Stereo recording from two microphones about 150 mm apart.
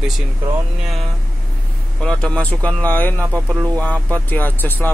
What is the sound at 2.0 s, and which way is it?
Speech, 5° left (ahead or behind).